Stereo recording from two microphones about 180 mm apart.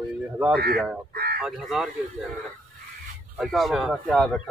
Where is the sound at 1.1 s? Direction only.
60° right (ahead or behind).